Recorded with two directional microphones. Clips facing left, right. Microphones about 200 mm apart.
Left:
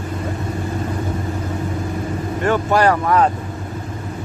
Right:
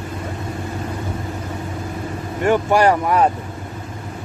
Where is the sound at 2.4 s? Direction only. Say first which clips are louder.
Right 1 dB; 15° right (ahead or behind).